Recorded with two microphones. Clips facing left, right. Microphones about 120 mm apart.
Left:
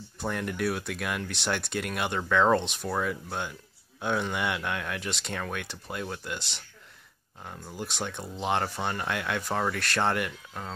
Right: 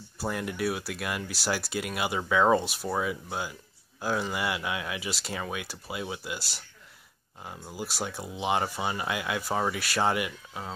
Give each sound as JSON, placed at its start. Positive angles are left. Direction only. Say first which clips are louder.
{"t": 0.2, "sound": "speech", "louder": "even", "side_deg": -5}